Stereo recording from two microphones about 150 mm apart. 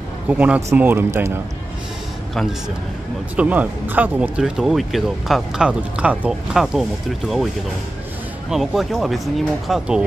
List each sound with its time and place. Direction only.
0.3 s speech: 10° right (ahead or behind)
3.3 s speech: 10° right (ahead or behind)
8.5 s speech: centre (ahead or behind)